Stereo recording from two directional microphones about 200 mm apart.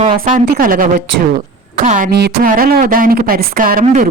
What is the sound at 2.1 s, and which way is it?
Speech, 50° right (ahead or behind).